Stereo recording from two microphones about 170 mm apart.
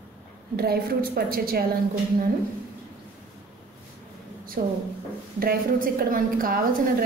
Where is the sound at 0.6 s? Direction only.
65° right (ahead or behind).